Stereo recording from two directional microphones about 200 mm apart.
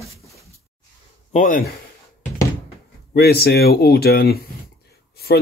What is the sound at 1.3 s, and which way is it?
Speech, 40° left (ahead or behind).